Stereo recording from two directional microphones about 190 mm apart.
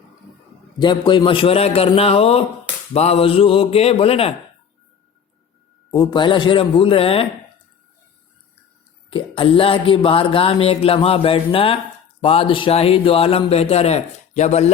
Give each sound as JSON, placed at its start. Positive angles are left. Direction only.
{"t": 0.8, "sound": "speech", "side_deg": 25}
{"t": 5.9, "sound": "speech", "side_deg": 20}
{"t": 9.0, "sound": "speech", "side_deg": 30}